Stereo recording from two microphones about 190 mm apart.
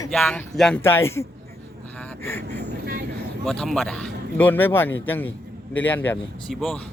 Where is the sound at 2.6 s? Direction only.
55° right (ahead or behind).